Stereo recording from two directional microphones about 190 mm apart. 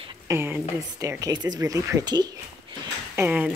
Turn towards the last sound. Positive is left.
turn(degrees=-10)  # may be behind; listen again after turning